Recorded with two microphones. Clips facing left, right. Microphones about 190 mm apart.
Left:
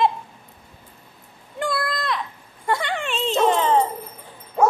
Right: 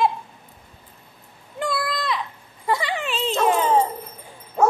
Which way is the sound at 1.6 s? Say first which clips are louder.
Even; centre (ahead or behind).